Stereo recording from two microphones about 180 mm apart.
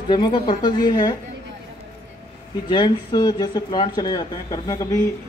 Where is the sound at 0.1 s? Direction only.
25° left (ahead or behind).